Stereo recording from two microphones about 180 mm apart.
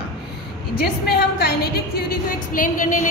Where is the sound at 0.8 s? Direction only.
60° left (ahead or behind).